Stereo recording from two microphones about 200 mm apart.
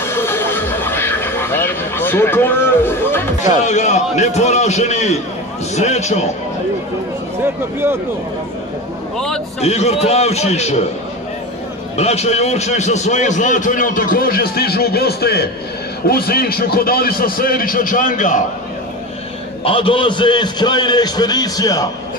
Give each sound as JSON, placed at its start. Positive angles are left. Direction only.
{"t": 0.0, "sound": "a sound", "side_deg": 10}
{"t": 3.6, "sound": "a man's voice", "side_deg": 35}
{"t": 9.6, "sound": "a man's voice", "side_deg": 30}
{"t": 12.0, "sound": "a man's voice", "side_deg": 30}
{"t": 19.6, "sound": "a man's voice", "side_deg": 25}